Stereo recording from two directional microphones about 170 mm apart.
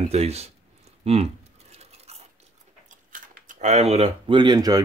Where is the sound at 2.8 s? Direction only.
45° right (ahead or behind).